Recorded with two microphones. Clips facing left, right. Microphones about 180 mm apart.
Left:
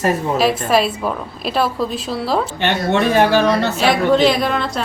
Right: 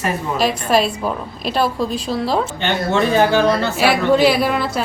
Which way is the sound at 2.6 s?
65° left (ahead or behind).